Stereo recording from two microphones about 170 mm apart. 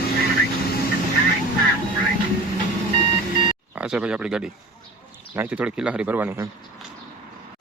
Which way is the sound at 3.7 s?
5° right (ahead or behind).